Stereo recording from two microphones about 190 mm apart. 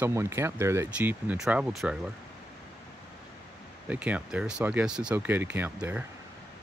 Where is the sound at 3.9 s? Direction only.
5° right (ahead or behind).